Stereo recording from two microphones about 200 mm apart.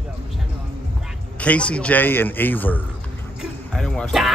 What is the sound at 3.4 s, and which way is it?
Music, 5° left (ahead or behind).